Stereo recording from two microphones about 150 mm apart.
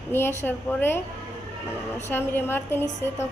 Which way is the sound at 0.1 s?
15° left (ahead or behind).